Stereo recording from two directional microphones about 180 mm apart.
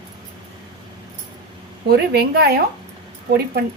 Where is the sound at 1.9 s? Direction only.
60° right (ahead or behind).